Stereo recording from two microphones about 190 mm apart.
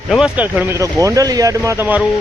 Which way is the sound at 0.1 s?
5° right (ahead or behind).